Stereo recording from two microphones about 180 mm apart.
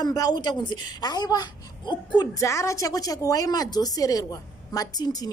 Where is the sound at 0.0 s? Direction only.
20° left (ahead or behind).